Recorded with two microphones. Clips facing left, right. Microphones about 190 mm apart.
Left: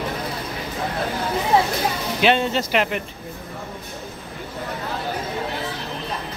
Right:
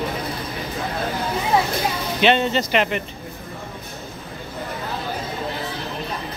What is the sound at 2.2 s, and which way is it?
Speech, 5° left (ahead or behind).